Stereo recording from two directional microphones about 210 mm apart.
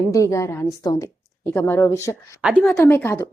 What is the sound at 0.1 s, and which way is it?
Speech, 15° left (ahead or behind).